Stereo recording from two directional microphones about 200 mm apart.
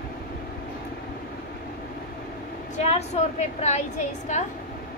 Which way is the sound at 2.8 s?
30° left (ahead or behind).